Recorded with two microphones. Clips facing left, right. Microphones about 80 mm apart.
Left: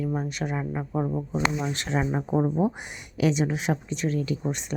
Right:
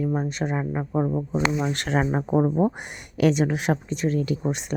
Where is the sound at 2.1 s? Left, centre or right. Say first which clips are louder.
Right 3 dB; right.